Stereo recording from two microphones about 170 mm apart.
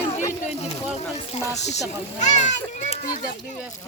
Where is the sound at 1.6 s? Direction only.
40° left (ahead or behind).